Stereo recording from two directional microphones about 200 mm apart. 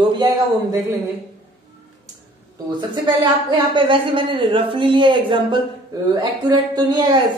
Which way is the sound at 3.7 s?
25° right (ahead or behind).